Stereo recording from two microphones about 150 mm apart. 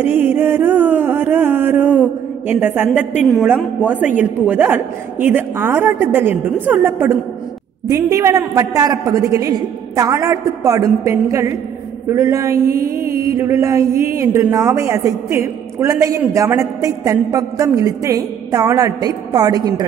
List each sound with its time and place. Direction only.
0.0 s music: 10° right (ahead or behind)
3.5 s a woman's voice: 10° right (ahead or behind)